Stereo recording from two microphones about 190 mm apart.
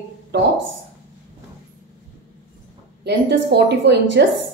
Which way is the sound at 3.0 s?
60° right (ahead or behind).